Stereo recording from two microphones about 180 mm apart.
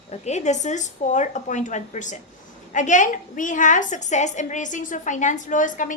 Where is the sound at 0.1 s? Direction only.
40° left (ahead or behind).